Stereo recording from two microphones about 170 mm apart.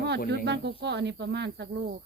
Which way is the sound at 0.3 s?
85° right.